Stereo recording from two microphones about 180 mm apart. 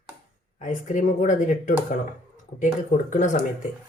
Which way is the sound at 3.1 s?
45° left (ahead or behind).